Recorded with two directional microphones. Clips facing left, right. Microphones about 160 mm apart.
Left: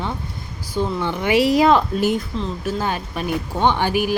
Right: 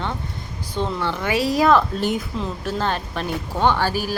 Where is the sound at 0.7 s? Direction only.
10° left (ahead or behind).